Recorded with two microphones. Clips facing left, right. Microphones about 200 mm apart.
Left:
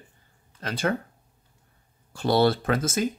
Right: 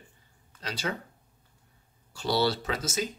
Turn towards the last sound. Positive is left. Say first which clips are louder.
# left 7 dB
turn(degrees=55)  # may be behind; listen again after turning